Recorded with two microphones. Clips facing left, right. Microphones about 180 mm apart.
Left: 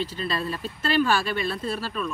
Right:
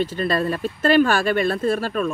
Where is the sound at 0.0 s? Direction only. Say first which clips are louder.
Right 7 dB; 50° right (ahead or behind).